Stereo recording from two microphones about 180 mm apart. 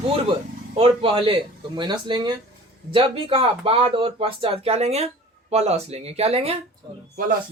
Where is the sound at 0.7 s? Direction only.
30° right (ahead or behind).